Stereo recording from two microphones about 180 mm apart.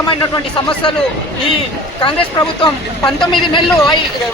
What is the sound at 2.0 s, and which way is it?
A man's voice, 25° left (ahead or behind).